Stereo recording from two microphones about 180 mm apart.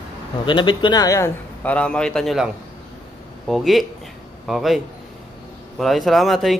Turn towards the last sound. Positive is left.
turn(degrees=0)  # may be behind; listen again after turning